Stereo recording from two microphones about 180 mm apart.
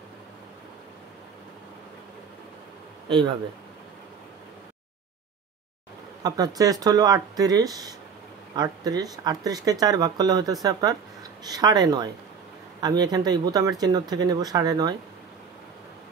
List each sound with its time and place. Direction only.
3.1 s speech: 30° right (ahead or behind)
6.2 s speech: 20° right (ahead or behind)